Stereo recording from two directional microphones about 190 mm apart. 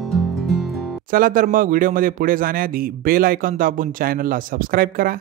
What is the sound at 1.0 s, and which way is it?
A man's voice, 45° right (ahead or behind).